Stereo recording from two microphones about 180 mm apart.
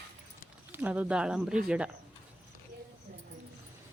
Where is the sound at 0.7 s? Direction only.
10° right (ahead or behind).